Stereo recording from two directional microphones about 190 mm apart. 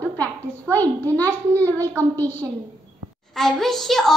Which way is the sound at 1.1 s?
10° left (ahead or behind).